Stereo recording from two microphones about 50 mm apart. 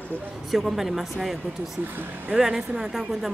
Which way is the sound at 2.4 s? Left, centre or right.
Centre.